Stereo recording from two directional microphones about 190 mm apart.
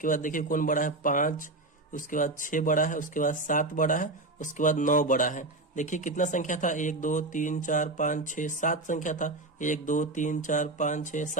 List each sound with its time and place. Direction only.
0.0 s speech: 45° left (ahead or behind)